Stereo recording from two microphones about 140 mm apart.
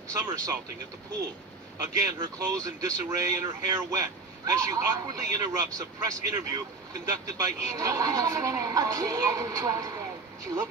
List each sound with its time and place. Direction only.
0.1 s speech: 20° right (ahead or behind)
1.8 s speech: 25° right (ahead or behind)